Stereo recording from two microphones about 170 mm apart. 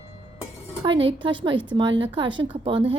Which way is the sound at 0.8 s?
30° right (ahead or behind).